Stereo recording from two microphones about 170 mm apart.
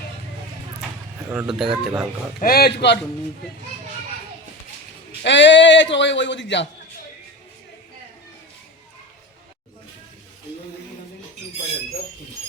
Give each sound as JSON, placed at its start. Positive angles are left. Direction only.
{"t": 1.3, "sound": "speech", "side_deg": -5}
{"t": 2.4, "sound": "speech", "side_deg": 60}
{"t": 5.2, "sound": "a man's voice", "side_deg": 90}